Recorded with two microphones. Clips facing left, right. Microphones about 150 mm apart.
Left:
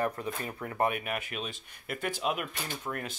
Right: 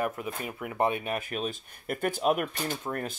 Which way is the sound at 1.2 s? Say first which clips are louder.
Right 6 dB; 45° right (ahead or behind).